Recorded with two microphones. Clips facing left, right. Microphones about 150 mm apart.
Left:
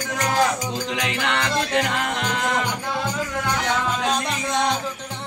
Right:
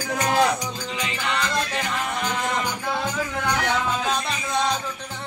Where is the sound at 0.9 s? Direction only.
75° left (ahead or behind).